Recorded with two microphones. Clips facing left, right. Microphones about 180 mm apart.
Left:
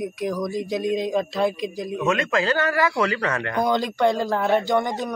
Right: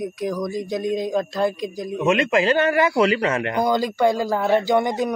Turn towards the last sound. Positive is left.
turn(degrees=-15)  # may be behind; listen again after turning